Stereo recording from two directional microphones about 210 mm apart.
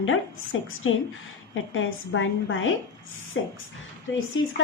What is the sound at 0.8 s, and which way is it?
A woman's voice, 70° left (ahead or behind).